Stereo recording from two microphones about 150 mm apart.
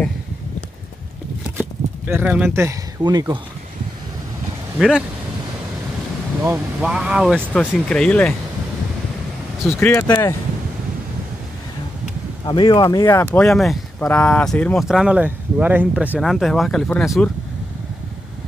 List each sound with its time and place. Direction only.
2.0 s speech: 10° right (ahead or behind)
4.7 s speech: 5° right (ahead or behind)
6.8 s speech: 5° right (ahead or behind)
9.8 s speech: 15° left (ahead or behind)
12.4 s speech: 30° left (ahead or behind)
13.4 s speech: centre (ahead or behind)
16.2 s speech: centre (ahead or behind)